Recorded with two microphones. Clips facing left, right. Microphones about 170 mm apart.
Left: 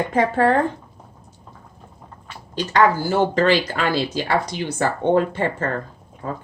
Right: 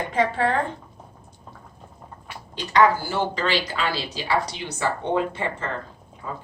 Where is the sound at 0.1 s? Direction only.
45° left (ahead or behind).